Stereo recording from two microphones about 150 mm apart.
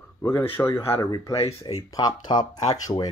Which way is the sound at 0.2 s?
15° left (ahead or behind).